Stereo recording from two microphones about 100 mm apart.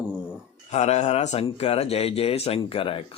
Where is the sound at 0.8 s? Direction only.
90° left; by 3.0 s 65° left (ahead or behind).